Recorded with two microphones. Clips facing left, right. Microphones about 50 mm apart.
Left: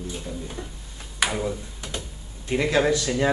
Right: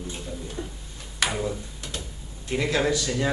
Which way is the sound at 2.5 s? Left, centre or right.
Centre.